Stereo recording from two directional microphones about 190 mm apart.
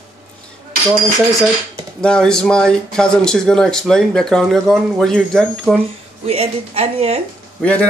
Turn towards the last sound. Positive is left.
turn(degrees=5)  # may be behind; listen again after turning